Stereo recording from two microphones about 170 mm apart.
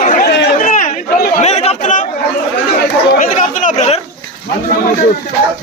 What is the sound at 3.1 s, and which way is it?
Chatter, 50° left (ahead or behind).